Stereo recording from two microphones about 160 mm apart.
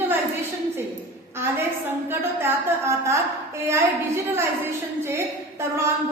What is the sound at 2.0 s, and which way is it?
A woman's voice, 15° right (ahead or behind).